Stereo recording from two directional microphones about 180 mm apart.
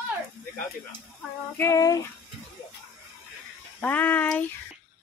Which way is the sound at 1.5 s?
15° left (ahead or behind).